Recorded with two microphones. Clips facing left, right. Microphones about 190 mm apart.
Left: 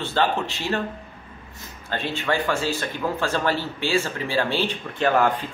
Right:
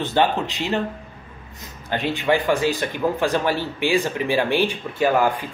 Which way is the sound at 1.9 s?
15° right (ahead or behind).